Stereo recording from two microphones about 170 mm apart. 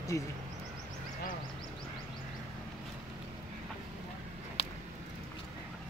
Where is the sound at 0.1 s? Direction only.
15° left (ahead or behind).